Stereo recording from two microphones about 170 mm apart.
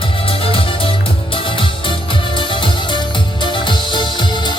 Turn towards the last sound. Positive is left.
turn(degrees=25)  # may be behind; listen again after turning